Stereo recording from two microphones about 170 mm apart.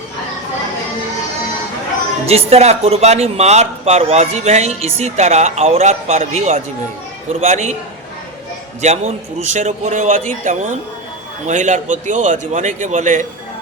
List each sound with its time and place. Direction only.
2.2 s speech: 35° right (ahead or behind)
8.8 s a man's voice: 40° right (ahead or behind)